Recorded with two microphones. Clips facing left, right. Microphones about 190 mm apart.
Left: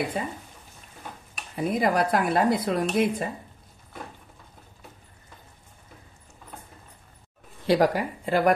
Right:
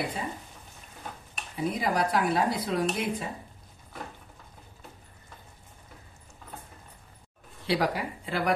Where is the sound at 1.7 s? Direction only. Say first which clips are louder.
Left 5 dB; 55° left (ahead or behind).